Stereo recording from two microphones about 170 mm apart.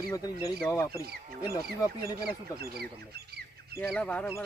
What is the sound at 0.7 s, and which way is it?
Speech, 20° left (ahead or behind).